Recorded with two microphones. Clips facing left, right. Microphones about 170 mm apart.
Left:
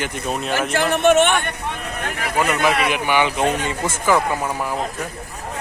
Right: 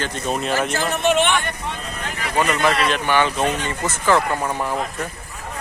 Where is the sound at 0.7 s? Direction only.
60° left (ahead or behind).